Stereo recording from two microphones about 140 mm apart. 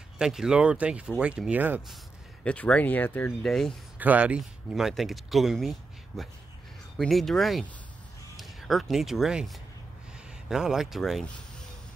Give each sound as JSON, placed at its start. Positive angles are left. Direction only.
{"t": 0.2, "sound": "speech", "side_deg": -5}
{"t": 2.4, "sound": "speech", "side_deg": 10}
{"t": 3.4, "sound": "speech", "side_deg": 0}
{"t": 4.0, "sound": "speech", "side_deg": -10}